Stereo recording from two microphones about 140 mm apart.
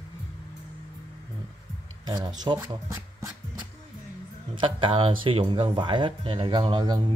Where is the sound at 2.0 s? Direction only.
30° right (ahead or behind).